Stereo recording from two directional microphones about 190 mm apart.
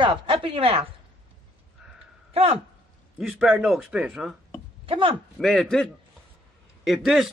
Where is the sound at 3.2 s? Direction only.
5° right (ahead or behind).